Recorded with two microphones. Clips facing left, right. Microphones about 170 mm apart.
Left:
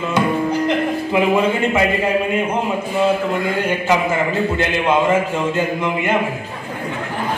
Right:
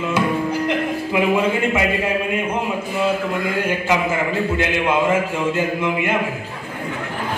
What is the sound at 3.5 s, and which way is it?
A man's voice, 10° right (ahead or behind).